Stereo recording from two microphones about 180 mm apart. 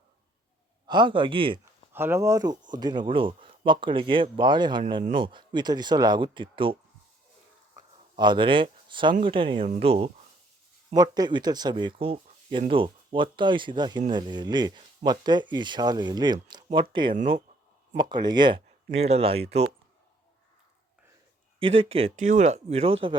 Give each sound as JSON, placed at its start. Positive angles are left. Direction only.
{"t": 0.9, "sound": "speech", "side_deg": -25}
{"t": 1.9, "sound": "speech", "side_deg": -10}
{"t": 8.1, "sound": "speech", "side_deg": -25}
{"t": 10.9, "sound": "speech", "side_deg": -20}
{"t": 21.6, "sound": "speech", "side_deg": -30}